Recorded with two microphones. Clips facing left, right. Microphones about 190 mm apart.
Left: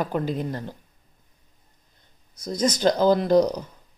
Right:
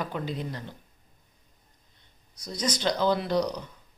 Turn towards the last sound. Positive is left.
turn(degrees=45)  # may be behind; listen again after turning